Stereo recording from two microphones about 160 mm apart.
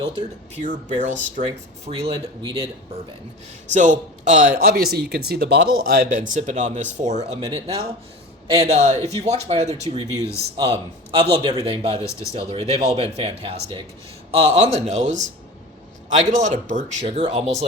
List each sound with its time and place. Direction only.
0.5 s speech: 50° right (ahead or behind)
1.8 s speech: 35° right (ahead or behind)
3.7 s speech: 50° right (ahead or behind)
7.3 s speech: 35° right (ahead or behind)